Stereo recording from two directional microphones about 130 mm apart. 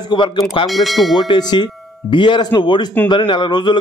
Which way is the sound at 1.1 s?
35° left (ahead or behind).